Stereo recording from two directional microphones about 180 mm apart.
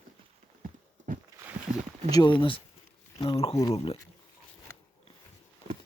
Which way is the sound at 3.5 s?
15° left (ahead or behind).